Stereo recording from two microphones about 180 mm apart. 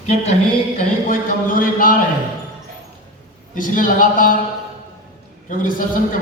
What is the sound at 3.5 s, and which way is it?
Speech, 50° left (ahead or behind).